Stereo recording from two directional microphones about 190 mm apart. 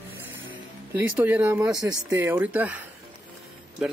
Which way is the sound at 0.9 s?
10° right (ahead or behind).